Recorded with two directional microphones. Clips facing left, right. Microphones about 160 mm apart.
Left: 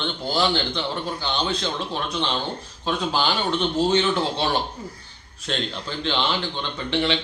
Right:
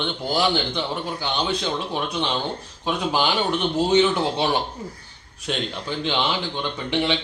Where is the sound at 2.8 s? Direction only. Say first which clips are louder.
Right 1 dB; 15° right (ahead or behind).